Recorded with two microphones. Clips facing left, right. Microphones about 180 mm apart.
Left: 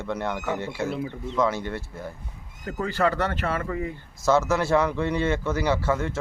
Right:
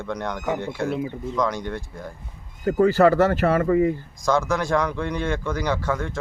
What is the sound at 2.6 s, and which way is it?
Speech, 40° right (ahead or behind).